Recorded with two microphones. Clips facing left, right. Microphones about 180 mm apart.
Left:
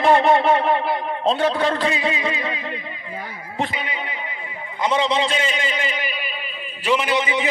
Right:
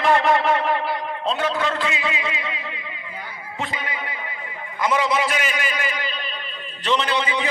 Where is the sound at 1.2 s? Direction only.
30° left (ahead or behind).